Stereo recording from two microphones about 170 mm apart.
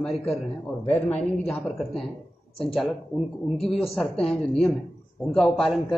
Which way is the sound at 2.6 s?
Centre (ahead or behind).